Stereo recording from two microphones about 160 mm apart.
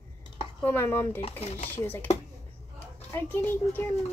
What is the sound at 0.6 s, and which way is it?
A child's voice, 15° left (ahead or behind).